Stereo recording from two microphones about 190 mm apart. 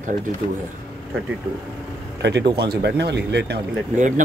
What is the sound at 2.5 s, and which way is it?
Speech, 60° right (ahead or behind).